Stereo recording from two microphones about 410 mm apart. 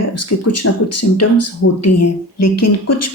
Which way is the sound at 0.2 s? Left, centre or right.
Left.